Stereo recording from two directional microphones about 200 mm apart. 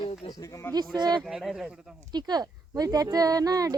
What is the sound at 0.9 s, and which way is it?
Speech, 20° right (ahead or behind).